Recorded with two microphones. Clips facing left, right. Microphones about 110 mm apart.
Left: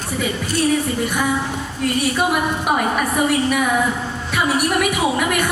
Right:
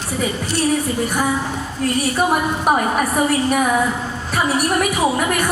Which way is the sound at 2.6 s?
40° right (ahead or behind).